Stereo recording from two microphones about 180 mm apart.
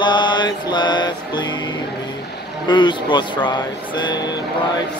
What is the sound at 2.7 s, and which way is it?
Mantra, 25° left (ahead or behind).